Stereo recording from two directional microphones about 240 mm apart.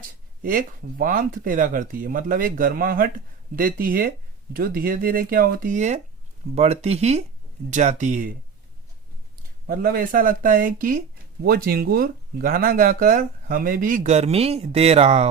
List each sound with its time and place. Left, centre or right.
0.4 s speech: right
9.6 s speech: right